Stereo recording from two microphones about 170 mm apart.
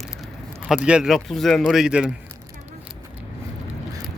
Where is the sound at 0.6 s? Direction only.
5° right (ahead or behind).